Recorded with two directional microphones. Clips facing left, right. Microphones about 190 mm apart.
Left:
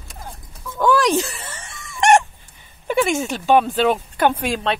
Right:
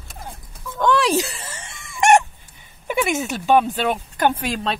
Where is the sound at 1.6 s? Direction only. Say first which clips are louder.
Left 1 dB; 25° right (ahead or behind).